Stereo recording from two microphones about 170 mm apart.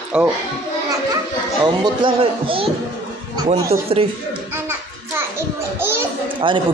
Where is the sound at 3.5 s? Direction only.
15° right (ahead or behind).